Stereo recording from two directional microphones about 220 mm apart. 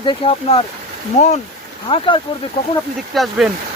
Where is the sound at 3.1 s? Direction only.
Centre (ahead or behind).